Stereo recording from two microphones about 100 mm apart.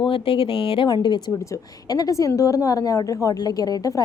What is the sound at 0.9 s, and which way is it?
Speech, 45° left (ahead or behind).